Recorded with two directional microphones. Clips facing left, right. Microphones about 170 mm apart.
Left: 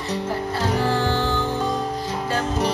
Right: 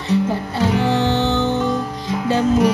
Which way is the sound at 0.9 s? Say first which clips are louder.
Right 4 dB; 25° right (ahead or behind).